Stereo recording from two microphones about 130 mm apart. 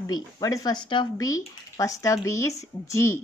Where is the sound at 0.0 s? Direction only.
25° left (ahead or behind).